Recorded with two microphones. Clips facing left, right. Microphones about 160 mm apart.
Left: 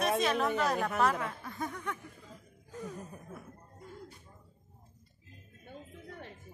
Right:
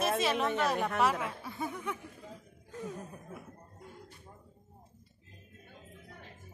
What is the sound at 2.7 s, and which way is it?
Chuckle, centre (ahead or behind).